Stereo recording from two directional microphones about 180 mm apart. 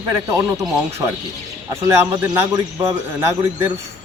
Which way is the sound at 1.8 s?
15° right (ahead or behind).